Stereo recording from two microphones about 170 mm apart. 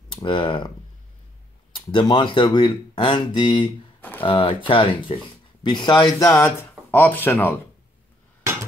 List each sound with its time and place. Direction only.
0.1 s speech: 30° left (ahead or behind)
1.7 s speech: 30° left (ahead or behind); by 7.6 s 10° left (ahead or behind)